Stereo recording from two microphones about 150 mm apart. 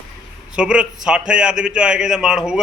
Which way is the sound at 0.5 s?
5° right (ahead or behind).